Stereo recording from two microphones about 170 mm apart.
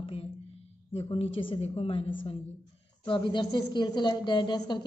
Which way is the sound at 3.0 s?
30° left (ahead or behind).